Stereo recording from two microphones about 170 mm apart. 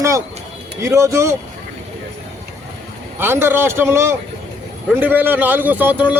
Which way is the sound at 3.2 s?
15° right (ahead or behind).